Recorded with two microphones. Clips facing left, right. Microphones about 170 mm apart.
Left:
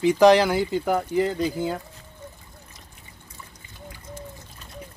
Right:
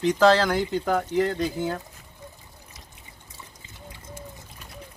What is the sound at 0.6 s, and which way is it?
Speech, 5° left (ahead or behind).